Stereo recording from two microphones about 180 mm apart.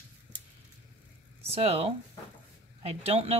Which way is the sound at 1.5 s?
35° right (ahead or behind).